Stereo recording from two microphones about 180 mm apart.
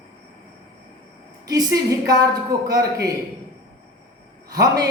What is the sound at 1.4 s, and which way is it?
A woman's voice, 20° right (ahead or behind).